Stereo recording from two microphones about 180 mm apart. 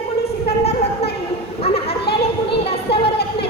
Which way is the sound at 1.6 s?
35° left (ahead or behind).